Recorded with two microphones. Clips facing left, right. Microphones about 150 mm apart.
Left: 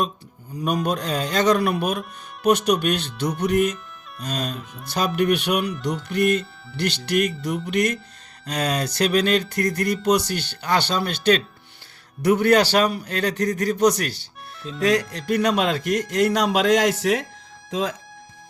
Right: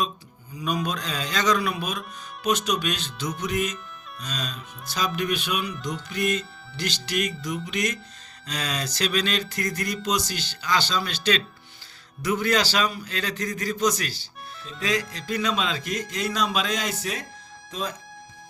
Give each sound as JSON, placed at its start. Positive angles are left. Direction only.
{"t": 0.5, "sound": "speech", "side_deg": 55}
{"t": 12.2, "sound": "speech", "side_deg": 65}